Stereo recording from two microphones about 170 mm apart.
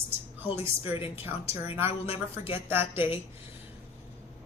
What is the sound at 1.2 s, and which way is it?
Speech, 15° right (ahead or behind).